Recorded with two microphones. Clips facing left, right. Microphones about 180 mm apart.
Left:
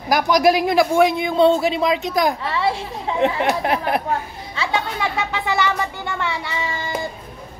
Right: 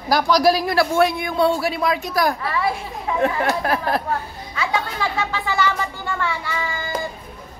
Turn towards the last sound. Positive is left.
turn(degrees=25)  # may be behind; listen again after turning